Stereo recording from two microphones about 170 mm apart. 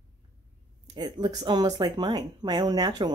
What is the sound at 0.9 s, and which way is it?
Speech, 25° right (ahead or behind).